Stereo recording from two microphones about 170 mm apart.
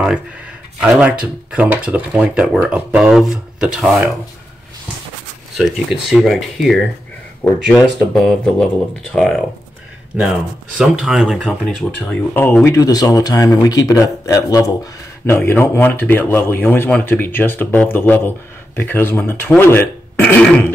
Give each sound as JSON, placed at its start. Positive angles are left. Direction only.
{"t": 0.7, "sound": "speech", "side_deg": -5}
{"t": 5.6, "sound": "speech", "side_deg": -5}
{"t": 10.8, "sound": "speech", "side_deg": -5}